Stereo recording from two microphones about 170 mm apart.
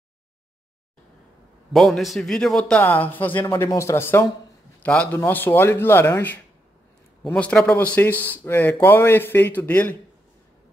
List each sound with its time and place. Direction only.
1.7 s a man's voice: centre (ahead or behind)